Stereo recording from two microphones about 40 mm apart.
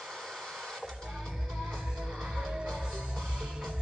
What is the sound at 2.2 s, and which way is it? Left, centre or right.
Music, centre.